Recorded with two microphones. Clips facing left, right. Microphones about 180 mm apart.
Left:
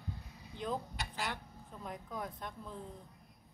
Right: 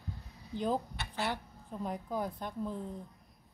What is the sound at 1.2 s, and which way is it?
Speech, 35° right (ahead or behind).